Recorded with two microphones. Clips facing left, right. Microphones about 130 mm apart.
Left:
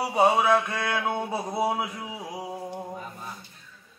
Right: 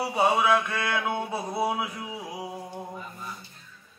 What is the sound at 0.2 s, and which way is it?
Mantra, 35° left (ahead or behind).